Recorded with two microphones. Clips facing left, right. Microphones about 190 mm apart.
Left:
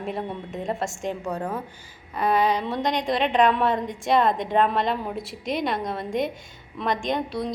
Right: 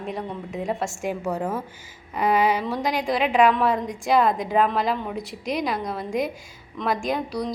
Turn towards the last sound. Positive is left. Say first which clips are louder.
# even
turn(degrees=0)  # may be behind; listen again after turning